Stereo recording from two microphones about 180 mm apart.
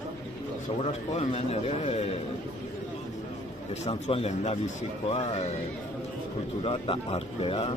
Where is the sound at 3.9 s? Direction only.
35° left (ahead or behind).